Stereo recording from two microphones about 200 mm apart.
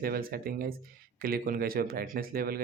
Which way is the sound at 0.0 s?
45° right (ahead or behind).